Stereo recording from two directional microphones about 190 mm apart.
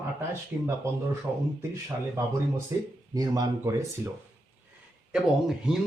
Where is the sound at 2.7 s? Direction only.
15° right (ahead or behind).